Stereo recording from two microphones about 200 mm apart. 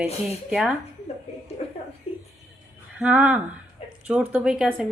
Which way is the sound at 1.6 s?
30° left (ahead or behind).